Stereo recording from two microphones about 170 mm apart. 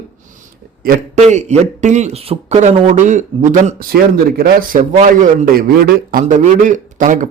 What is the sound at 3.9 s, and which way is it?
Speech, 60° right (ahead or behind).